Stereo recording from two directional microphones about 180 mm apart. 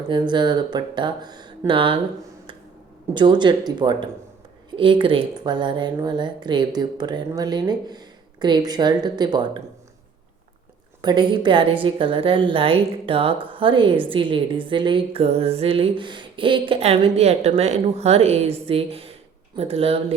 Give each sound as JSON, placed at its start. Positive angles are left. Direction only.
{"t": 0.1, "sound": "a woman's voice", "side_deg": -25}
{"t": 3.2, "sound": "a woman's voice", "side_deg": -25}
{"t": 11.0, "sound": "a woman's voice", "side_deg": -25}